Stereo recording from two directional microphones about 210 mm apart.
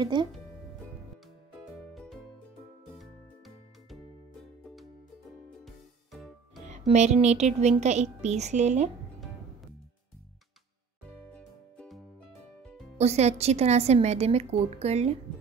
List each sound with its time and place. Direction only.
0.0 s speech: 20° right (ahead or behind)
2.0 s music: centre (ahead or behind)
5.7 s music: centre (ahead or behind)
6.9 s speech: 30° right (ahead or behind)
11.3 s music: 5° left (ahead or behind)
12.9 s speech: 30° right (ahead or behind)